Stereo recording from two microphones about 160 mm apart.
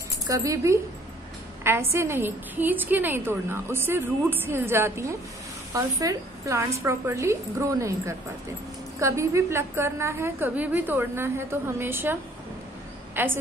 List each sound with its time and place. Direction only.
0.3 s a woman's voice: 20° right (ahead or behind)